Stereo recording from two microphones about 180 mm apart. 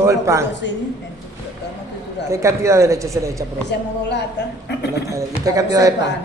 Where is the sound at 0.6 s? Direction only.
75° left (ahead or behind).